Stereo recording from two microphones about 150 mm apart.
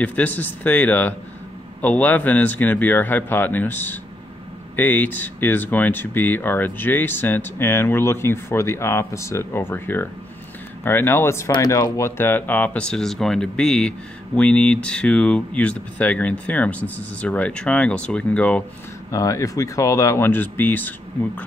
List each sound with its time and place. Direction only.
0.0 s speech: 10° left (ahead or behind)
19.0 s speech: 20° left (ahead or behind)